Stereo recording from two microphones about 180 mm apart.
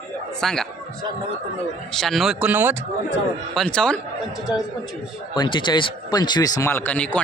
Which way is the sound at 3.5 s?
5° left (ahead or behind).